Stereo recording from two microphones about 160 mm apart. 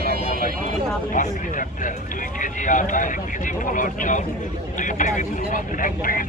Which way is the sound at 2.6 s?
55° left (ahead or behind).